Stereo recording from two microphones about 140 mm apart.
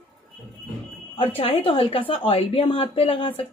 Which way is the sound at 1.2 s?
40° left (ahead or behind).